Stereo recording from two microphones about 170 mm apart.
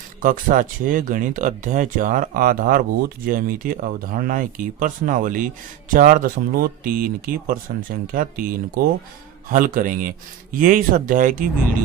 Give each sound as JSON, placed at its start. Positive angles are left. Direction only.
{"t": 0.2, "sound": "speech", "side_deg": -50}